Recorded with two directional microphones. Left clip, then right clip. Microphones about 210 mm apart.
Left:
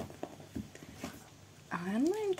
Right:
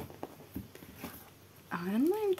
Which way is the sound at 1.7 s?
5° right (ahead or behind).